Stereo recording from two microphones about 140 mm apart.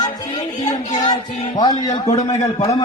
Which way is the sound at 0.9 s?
25° left (ahead or behind).